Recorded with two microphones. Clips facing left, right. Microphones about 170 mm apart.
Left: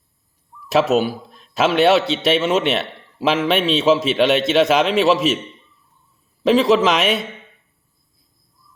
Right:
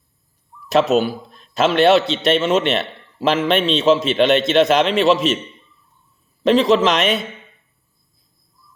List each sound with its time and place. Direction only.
0.7 s a man's voice: 5° left (ahead or behind)
6.4 s a man's voice: 5° left (ahead or behind)